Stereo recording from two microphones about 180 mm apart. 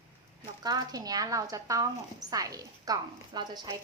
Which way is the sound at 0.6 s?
20° right (ahead or behind).